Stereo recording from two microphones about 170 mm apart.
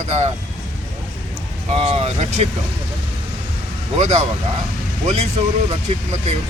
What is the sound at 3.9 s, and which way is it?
Speech, 40° right (ahead or behind).